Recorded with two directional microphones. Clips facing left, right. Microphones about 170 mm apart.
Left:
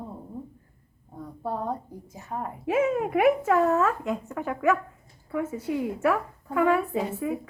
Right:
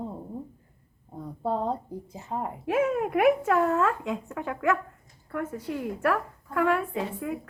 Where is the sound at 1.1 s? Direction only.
25° right (ahead or behind).